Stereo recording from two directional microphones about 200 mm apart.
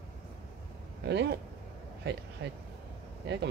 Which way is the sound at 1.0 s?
55° right (ahead or behind).